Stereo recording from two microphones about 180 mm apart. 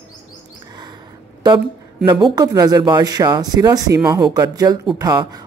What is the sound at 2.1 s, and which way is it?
Speech, 25° right (ahead or behind).